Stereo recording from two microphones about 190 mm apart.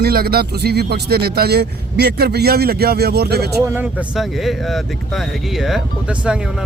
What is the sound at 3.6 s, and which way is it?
Speech, 10° right (ahead or behind).